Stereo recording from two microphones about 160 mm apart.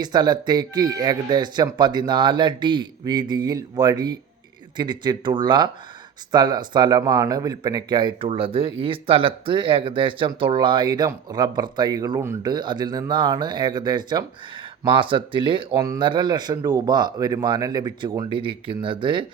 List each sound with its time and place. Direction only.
0.0 s speech: 25° right (ahead or behind)